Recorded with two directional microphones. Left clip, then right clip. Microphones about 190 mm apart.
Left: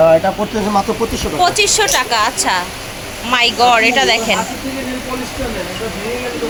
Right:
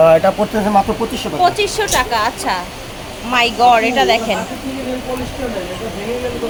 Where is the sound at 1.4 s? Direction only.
Centre (ahead or behind).